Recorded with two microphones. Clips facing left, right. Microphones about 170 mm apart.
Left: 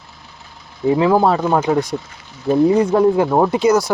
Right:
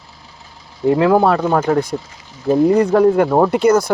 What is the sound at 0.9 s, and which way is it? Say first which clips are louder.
Speech: right 1 dB; 65° right (ahead or behind).